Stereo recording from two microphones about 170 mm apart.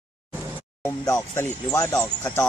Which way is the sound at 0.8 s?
15° left (ahead or behind).